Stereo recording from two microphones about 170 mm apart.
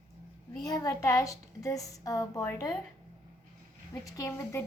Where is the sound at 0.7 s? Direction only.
20° left (ahead or behind).